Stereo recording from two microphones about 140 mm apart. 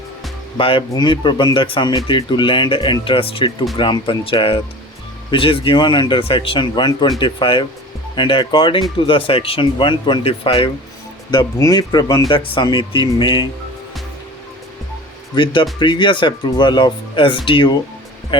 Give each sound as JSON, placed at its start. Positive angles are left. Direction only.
{"t": 0.5, "sound": "speech", "side_deg": 40}
{"t": 15.8, "sound": "speech", "side_deg": 35}